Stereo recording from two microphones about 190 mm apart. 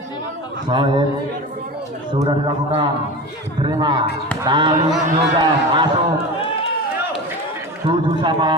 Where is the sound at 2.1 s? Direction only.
25° right (ahead or behind).